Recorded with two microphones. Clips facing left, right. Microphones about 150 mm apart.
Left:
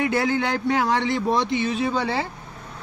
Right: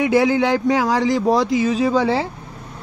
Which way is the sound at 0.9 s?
40° right (ahead or behind).